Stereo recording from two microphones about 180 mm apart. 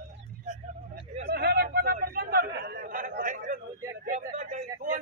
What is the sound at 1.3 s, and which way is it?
Chatter, 60° right (ahead or behind).